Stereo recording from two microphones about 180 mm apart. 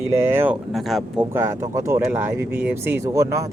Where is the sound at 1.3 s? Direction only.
15° right (ahead or behind).